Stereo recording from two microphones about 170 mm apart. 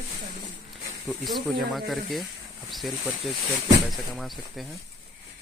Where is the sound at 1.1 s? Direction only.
Centre (ahead or behind).